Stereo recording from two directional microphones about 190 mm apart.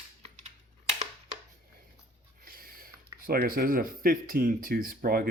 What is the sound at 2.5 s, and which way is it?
Speech, 50° right (ahead or behind).